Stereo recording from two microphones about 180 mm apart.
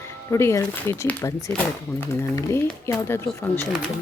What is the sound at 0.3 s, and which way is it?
Speech, 15° left (ahead or behind).